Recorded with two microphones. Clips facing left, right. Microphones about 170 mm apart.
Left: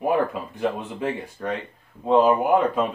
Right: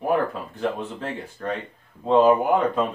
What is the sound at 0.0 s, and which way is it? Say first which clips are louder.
Speech: left 1 dB; 10° left (ahead or behind).